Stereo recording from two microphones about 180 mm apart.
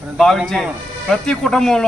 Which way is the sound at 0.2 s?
Centre (ahead or behind).